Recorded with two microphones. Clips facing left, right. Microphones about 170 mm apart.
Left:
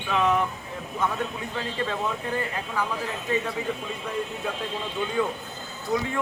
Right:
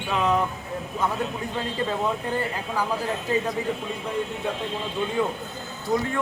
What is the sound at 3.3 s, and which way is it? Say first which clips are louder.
Speech: right 1 dB; 30° right (ahead or behind).